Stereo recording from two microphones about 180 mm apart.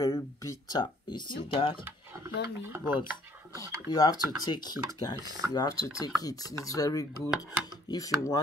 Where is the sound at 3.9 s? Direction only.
20° left (ahead or behind).